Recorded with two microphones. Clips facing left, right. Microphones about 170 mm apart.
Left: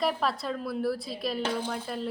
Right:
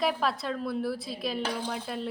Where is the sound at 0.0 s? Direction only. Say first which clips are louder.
Even; centre (ahead or behind).